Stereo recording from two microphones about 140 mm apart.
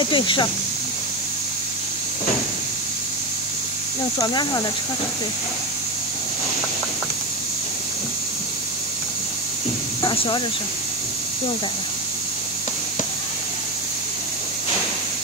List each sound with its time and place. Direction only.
0.0 s speech: 35° left (ahead or behind)
4.2 s speech: 30° left (ahead or behind)
10.0 s a sound: 35° left (ahead or behind)